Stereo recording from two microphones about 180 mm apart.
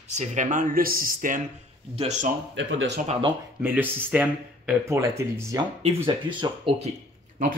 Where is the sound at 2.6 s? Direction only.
90° right.